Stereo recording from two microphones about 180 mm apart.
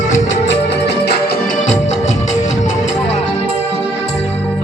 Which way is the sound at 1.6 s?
40° left (ahead or behind).